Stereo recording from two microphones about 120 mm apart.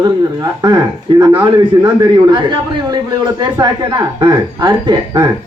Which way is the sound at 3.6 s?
35° right (ahead or behind).